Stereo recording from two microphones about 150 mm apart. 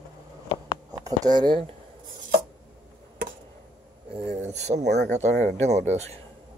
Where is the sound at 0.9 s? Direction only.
25° right (ahead or behind).